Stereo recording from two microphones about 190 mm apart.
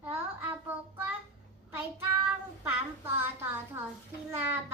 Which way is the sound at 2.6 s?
15° right (ahead or behind).